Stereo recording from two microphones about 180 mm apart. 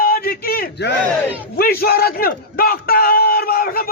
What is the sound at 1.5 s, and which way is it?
A man's voice, 60° left (ahead or behind).